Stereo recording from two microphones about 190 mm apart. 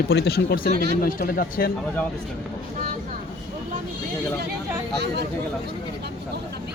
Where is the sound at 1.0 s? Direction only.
50° left (ahead or behind).